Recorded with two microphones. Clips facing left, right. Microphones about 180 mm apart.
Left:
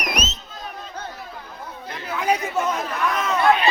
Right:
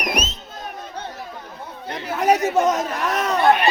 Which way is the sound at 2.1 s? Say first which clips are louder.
Right 5 dB; 40° right (ahead or behind).